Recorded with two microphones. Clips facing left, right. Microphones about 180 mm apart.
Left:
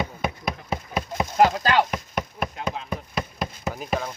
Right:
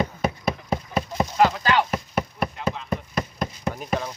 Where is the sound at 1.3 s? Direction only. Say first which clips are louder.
Left 2 dB; 45° left (ahead or behind).